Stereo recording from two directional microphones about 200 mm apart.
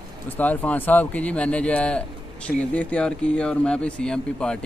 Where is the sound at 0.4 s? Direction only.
10° left (ahead or behind).